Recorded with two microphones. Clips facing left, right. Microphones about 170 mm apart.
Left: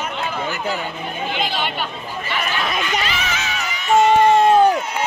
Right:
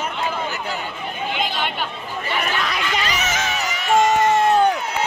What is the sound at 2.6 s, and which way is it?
Speech, 25° left (ahead or behind).